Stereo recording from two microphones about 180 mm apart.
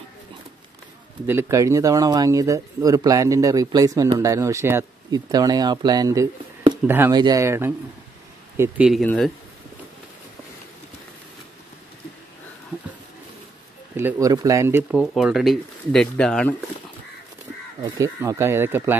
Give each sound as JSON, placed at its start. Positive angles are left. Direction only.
{"t": 1.2, "sound": "speech", "side_deg": -15}
{"t": 9.0, "sound": "speech", "side_deg": 5}
{"t": 13.9, "sound": "speech", "side_deg": -15}
{"t": 17.8, "sound": "speech", "side_deg": -20}